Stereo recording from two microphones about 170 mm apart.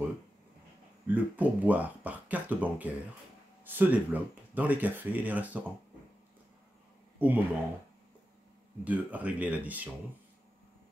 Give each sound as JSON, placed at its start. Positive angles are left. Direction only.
{"t": 1.0, "sound": "speech", "side_deg": -10}
{"t": 7.2, "sound": "speech", "side_deg": -10}
{"t": 8.8, "sound": "speech", "side_deg": -10}